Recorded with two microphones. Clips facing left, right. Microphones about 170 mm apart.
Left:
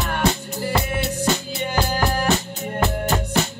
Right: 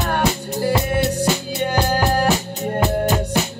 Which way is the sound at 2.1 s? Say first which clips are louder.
Right 3 dB; 35° right (ahead or behind).